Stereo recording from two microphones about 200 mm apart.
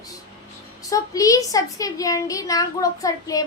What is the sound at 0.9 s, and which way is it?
A woman's voice, 15° left (ahead or behind).